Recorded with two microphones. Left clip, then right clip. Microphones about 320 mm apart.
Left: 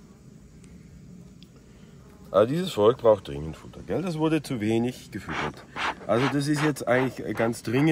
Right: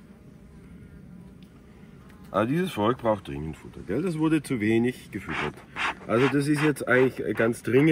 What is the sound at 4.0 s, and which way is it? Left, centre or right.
Speech, centre.